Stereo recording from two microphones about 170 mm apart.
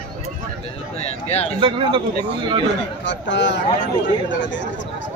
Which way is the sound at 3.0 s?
90° left.